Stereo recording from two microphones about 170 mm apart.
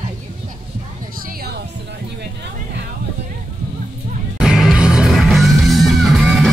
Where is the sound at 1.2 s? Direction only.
60° right (ahead or behind).